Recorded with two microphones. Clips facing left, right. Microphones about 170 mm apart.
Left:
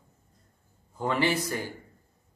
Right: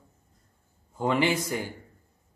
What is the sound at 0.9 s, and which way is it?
Mantra, 15° right (ahead or behind).